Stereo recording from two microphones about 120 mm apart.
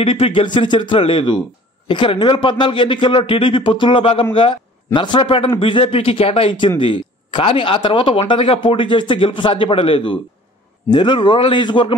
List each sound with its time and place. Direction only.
0.0 s a man's voice: 50° left (ahead or behind)